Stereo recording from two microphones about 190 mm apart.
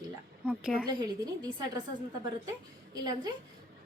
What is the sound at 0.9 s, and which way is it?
Speech, 20° right (ahead or behind).